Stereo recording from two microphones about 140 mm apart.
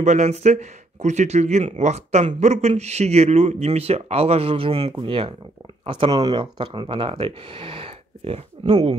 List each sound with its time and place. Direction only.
0.0 s speech: 55° right (ahead or behind)